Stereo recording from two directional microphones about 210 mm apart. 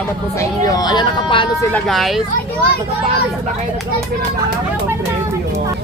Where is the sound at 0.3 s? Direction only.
15° left (ahead or behind).